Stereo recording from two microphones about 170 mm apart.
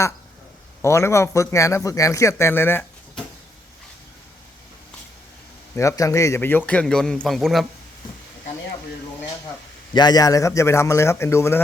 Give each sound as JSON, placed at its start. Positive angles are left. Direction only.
{"t": 0.8, "sound": "a man's voice", "side_deg": 15}
{"t": 5.7, "sound": "a man's voice", "side_deg": 20}
{"t": 9.9, "sound": "a man's voice", "side_deg": 25}